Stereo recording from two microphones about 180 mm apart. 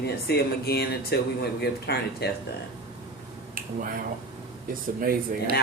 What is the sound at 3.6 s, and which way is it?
Speech, 50° right (ahead or behind).